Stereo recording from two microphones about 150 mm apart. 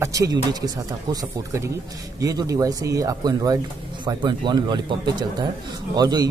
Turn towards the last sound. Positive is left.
turn(degrees=-25)  # may be behind; listen again after turning